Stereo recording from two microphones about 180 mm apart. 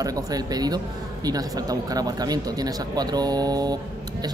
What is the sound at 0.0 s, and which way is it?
Speech, 20° right (ahead or behind).